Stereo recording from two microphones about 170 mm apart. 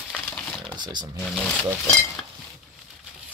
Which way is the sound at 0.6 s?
25° right (ahead or behind).